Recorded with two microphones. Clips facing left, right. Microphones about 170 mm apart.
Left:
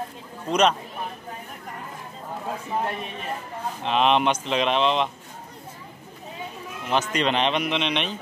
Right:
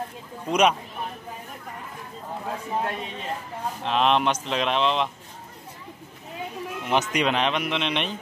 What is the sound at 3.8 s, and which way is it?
Speech, centre (ahead or behind).